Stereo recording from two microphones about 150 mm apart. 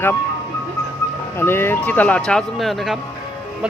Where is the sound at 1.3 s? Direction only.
15° left (ahead or behind); by 3.0 s centre (ahead or behind).